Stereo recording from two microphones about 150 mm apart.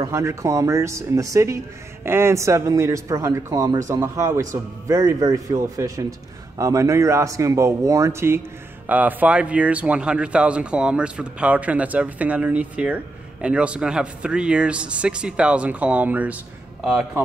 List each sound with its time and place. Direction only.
0.1 s speech: 20° right (ahead or behind)